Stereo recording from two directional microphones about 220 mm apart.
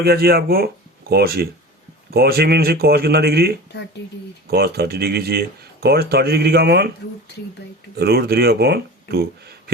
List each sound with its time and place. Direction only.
0.0 s speech: 45° right (ahead or behind)
3.7 s speech: 50° left (ahead or behind)
4.4 s speech: 45° right (ahead or behind)
7.9 s speech: 45° right (ahead or behind)